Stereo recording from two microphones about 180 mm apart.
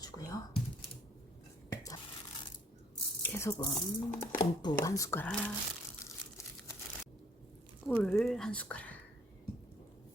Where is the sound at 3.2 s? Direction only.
15° left (ahead or behind).